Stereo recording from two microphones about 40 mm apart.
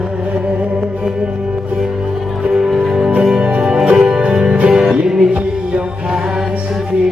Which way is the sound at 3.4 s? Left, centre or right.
Right.